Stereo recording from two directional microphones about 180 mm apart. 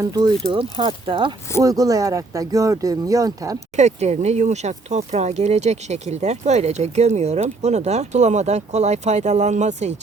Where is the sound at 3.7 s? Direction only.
40° right (ahead or behind).